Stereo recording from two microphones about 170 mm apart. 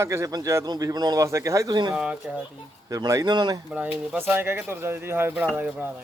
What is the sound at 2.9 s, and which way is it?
Speech, 20° right (ahead or behind).